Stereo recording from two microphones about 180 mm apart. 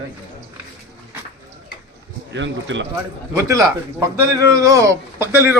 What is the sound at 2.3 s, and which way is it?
Speech, 90° right.